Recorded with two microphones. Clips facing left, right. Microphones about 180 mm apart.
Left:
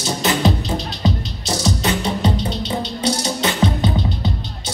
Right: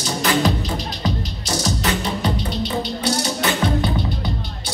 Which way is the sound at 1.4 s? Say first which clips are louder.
Left 2 dB; 25° left (ahead or behind).